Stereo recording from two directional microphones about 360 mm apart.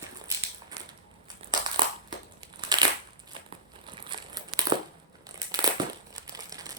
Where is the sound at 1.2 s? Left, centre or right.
Centre.